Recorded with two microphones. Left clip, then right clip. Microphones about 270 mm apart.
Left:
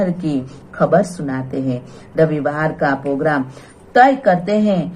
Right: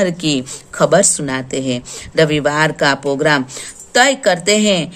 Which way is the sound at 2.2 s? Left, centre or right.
Right.